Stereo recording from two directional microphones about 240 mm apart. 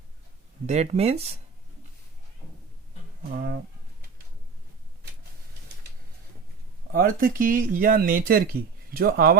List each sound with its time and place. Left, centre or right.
0.7 s speech: right
3.2 s speech: right
6.9 s speech: right